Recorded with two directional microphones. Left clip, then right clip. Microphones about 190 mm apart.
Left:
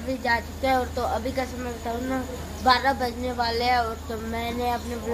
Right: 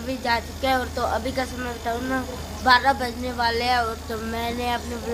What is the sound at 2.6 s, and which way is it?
A woman's voice, 10° left (ahead or behind).